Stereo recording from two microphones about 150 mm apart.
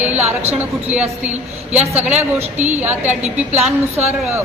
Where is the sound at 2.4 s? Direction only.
50° right (ahead or behind).